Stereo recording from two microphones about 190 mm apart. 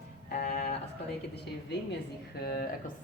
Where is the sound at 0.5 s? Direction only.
35° left (ahead or behind).